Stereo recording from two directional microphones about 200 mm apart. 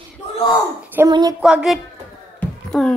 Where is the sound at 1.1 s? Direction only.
20° right (ahead or behind).